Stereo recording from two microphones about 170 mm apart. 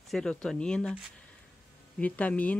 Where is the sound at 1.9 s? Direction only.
10° left (ahead or behind).